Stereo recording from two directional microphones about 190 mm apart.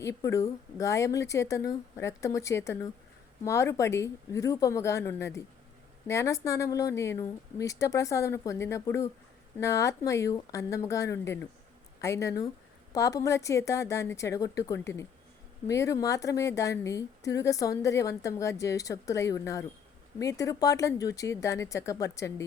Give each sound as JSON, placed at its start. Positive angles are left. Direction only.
{"t": 0.0, "sound": "a woman's voice", "side_deg": 15}